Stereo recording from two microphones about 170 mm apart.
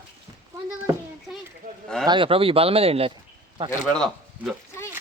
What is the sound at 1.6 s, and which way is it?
Speech, 50° right (ahead or behind).